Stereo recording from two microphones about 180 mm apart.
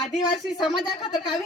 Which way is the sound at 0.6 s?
25° left (ahead or behind).